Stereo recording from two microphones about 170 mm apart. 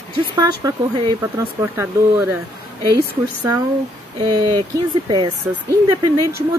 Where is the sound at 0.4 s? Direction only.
25° right (ahead or behind).